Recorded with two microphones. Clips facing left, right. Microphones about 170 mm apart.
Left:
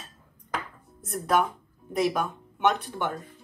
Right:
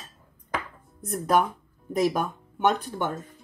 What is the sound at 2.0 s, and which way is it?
Speech, 40° right (ahead or behind).